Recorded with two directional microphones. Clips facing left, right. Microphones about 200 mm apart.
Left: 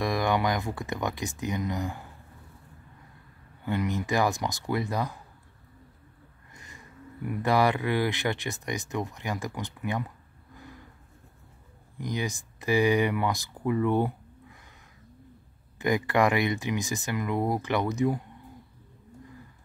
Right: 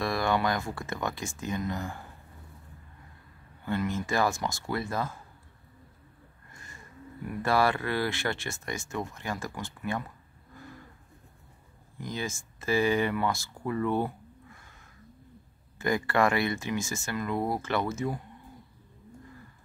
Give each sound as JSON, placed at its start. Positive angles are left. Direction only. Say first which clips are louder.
{"t": 0.0, "sound": "speech", "louder": "left 1 dB", "side_deg": 15}
{"t": 3.6, "sound": "speech", "louder": "left 1 dB", "side_deg": 15}
{"t": 6.5, "sound": "bird", "louder": "left 1 dB", "side_deg": 20}
{"t": 7.2, "sound": "speech", "louder": "left 2 dB", "side_deg": 15}
{"t": 10.5, "sound": "bird", "louder": "right 1 dB", "side_deg": 15}
{"t": 12.0, "sound": "speech", "louder": "left 3 dB", "side_deg": 15}
{"t": 15.8, "sound": "speech", "louder": "left 2 dB", "side_deg": 15}